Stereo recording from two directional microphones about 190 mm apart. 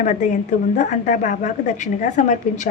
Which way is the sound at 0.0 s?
40° left (ahead or behind).